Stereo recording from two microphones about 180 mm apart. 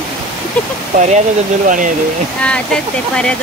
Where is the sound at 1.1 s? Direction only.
45° right (ahead or behind).